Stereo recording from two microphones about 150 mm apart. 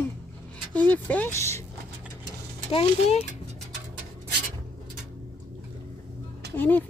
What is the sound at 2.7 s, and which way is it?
Speech, 40° left (ahead or behind).